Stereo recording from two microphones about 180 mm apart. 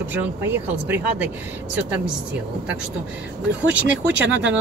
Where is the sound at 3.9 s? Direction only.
90° right.